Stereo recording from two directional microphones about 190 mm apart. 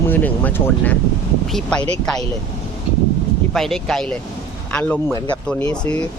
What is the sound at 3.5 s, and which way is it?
Speech, centre (ahead or behind).